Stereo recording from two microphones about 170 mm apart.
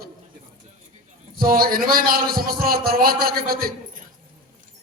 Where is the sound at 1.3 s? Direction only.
60° right (ahead or behind).